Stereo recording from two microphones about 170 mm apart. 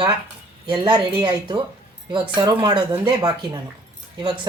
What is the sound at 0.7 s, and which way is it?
Speech, 25° right (ahead or behind).